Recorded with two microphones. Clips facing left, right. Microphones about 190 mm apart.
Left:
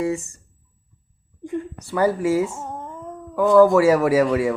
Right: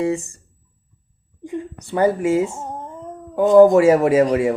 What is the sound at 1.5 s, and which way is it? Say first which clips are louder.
A man's voice: even; 20° right (ahead or behind).